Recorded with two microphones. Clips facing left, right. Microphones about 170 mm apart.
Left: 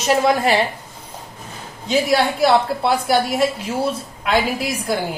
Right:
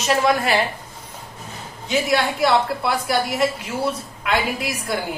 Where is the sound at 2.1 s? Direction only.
30° left (ahead or behind).